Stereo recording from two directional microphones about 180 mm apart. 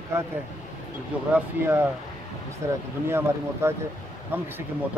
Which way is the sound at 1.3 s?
10° right (ahead or behind).